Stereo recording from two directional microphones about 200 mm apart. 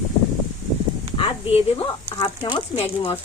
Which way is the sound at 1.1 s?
25° left (ahead or behind).